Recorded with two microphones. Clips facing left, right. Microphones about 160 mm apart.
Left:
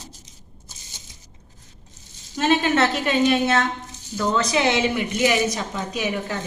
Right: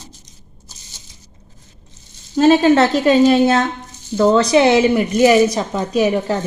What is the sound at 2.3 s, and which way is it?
A woman's voice, 35° right (ahead or behind).